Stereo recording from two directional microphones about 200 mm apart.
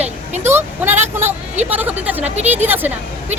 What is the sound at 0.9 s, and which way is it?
Speech, 35° right (ahead or behind).